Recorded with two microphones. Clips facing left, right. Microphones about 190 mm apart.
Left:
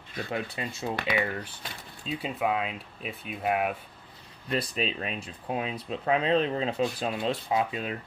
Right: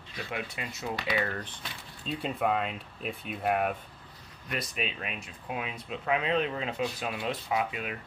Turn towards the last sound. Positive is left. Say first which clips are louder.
# left 3 dB
turn(degrees=30)  # may be behind; listen again after turning